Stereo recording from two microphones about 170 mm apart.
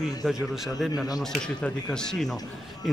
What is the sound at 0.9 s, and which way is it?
Speech, 20° left (ahead or behind).